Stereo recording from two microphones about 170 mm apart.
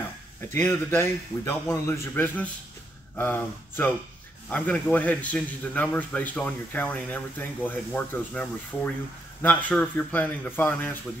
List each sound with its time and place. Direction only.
0.5 s a man's voice: 15° left (ahead or behind)